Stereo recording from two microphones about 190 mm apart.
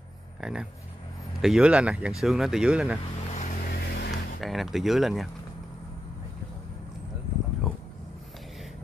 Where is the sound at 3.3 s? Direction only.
40° left (ahead or behind).